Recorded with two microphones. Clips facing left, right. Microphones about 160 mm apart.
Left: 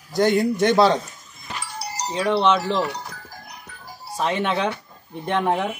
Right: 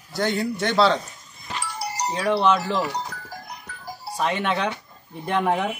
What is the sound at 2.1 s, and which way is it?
Speech, centre (ahead or behind).